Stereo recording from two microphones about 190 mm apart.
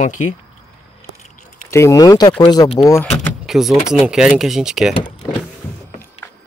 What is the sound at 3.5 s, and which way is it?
Speech, centre (ahead or behind).